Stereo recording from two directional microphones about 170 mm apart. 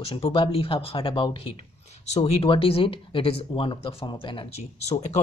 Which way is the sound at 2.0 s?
40° left (ahead or behind).